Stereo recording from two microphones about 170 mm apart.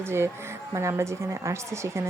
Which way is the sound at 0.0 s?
15° right (ahead or behind).